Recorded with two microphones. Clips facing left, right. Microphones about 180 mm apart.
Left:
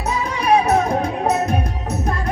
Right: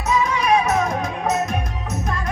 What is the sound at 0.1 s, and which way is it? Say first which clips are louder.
Music: even; 35° left (ahead or behind).